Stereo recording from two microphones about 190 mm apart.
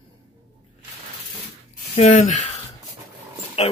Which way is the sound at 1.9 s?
40° left (ahead or behind).